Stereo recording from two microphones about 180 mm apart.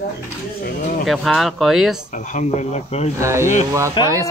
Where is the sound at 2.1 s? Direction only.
45° left (ahead or behind).